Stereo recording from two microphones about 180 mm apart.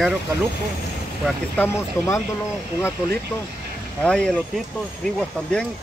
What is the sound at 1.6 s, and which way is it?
Speech, 15° left (ahead or behind).